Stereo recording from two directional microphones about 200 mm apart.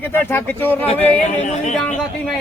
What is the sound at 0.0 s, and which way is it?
Speech, 10° left (ahead or behind).